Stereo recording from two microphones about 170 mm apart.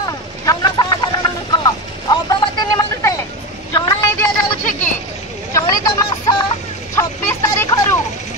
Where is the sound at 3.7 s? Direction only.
15° left (ahead or behind).